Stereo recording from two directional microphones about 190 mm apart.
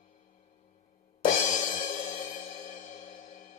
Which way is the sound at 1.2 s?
40° left (ahead or behind).